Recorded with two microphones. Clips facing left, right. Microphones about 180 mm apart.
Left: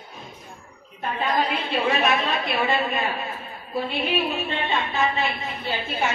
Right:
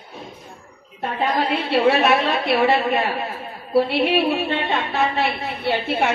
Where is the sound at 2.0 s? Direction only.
70° right (ahead or behind).